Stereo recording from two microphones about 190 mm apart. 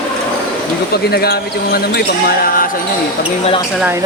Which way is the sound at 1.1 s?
55° left (ahead or behind).